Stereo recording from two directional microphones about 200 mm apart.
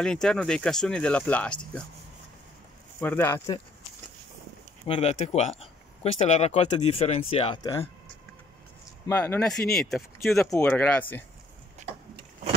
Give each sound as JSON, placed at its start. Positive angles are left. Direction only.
{"t": 0.0, "sound": "speech", "side_deg": 5}
{"t": 3.0, "sound": "speech", "side_deg": 10}
{"t": 4.8, "sound": "speech", "side_deg": 30}
{"t": 9.0, "sound": "speech", "side_deg": 15}
{"t": 9.5, "sound": "speech", "side_deg": 0}